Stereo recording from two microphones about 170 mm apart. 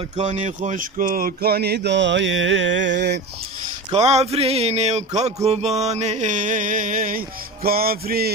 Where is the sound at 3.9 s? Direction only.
40° right (ahead or behind).